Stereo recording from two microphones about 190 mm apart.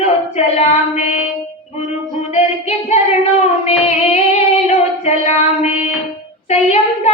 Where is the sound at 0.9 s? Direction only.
35° left (ahead or behind).